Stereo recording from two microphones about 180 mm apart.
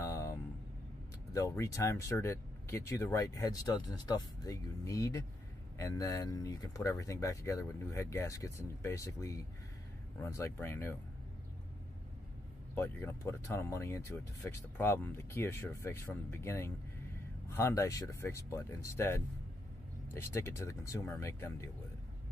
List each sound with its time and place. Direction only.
0.0 s vehicle: 15° left (ahead or behind)
1.3 s speech: 20° left (ahead or behind)
12.7 s speech: 10° left (ahead or behind)